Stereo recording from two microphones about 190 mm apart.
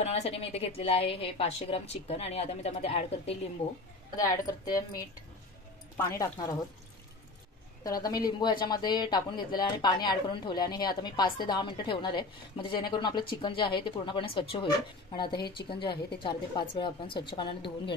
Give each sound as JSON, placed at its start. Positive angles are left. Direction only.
{"t": 0.0, "sound": "a woman's voice", "side_deg": 35}
{"t": 4.3, "sound": "speech", "side_deg": 20}
{"t": 7.8, "sound": "speech", "side_deg": 20}